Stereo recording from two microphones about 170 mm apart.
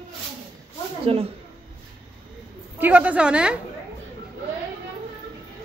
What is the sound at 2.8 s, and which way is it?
Speech, 10° right (ahead or behind).